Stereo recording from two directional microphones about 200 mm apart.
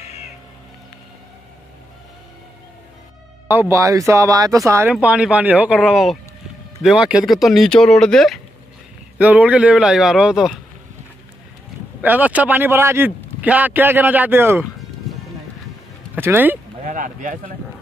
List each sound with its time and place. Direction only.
3.4 s speech: 10° right (ahead or behind)
12.0 s speech: 10° right (ahead or behind)
16.2 s speech: 10° right (ahead or behind)
16.8 s speech: 40° right (ahead or behind)